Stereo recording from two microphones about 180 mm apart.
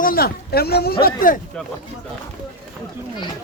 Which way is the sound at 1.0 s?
50° left (ahead or behind).